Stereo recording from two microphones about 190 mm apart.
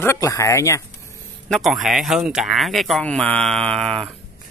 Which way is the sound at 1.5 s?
Centre (ahead or behind).